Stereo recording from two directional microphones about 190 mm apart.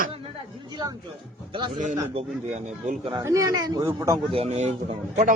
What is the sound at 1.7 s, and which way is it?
Speech, 40° right (ahead or behind).